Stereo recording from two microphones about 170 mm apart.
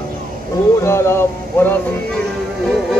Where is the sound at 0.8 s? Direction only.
15° left (ahead or behind).